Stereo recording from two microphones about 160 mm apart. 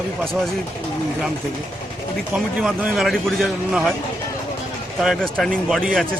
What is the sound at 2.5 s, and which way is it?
A man's voice, 5° right (ahead or behind).